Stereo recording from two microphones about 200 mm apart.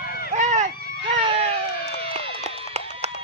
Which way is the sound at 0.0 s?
50° left (ahead or behind).